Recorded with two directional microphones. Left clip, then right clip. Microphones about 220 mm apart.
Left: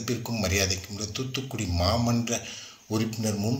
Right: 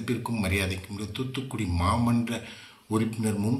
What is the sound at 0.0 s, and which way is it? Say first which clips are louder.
Speech: left 1 dB; 5° left (ahead or behind).